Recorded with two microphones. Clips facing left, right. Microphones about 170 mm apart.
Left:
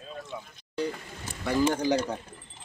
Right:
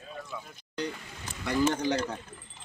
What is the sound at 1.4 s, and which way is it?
Speech, 10° left (ahead or behind).